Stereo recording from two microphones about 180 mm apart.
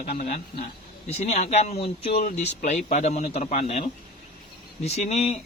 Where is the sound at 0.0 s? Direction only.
50° left (ahead or behind).